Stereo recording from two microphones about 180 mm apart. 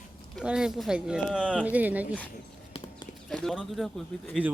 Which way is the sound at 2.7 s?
25° left (ahead or behind).